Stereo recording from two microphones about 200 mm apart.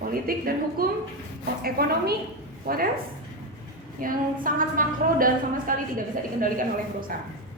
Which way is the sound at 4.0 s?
45° right (ahead or behind).